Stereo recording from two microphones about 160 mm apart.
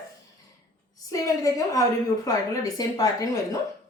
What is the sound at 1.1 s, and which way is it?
A woman's voice, 20° left (ahead or behind).